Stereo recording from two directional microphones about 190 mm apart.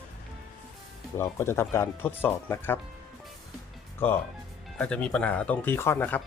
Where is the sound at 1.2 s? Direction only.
15° left (ahead or behind).